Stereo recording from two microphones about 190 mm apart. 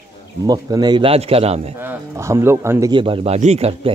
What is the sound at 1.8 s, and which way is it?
A man's voice, 15° right (ahead or behind).